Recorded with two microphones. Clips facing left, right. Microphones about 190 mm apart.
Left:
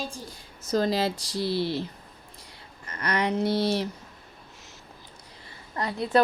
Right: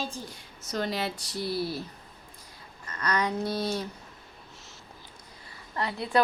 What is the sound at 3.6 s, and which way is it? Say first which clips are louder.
Speech: left 5 dB; 75° left (ahead or behind).